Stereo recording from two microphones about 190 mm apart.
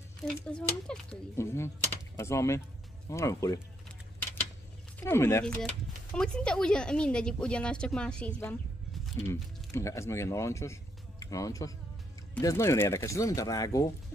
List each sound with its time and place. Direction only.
0.2 s speech: 5° left (ahead or behind)
5.0 s speech: 15° left (ahead or behind)